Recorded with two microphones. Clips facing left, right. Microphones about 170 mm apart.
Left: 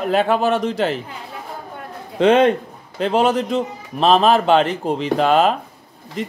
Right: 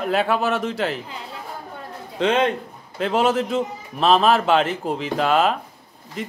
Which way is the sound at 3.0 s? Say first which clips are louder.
Left 3 dB; 35° left (ahead or behind).